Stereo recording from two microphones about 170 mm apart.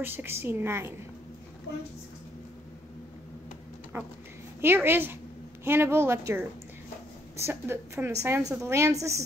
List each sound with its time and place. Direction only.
0.0 s a woman's voice: 15° right (ahead or behind)
3.9 s a woman's voice: 15° right (ahead or behind)